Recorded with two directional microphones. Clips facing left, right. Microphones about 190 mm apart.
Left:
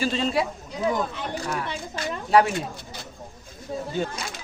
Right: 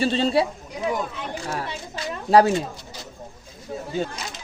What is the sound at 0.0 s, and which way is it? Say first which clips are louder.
Speech: right 4 dB; 30° right (ahead or behind).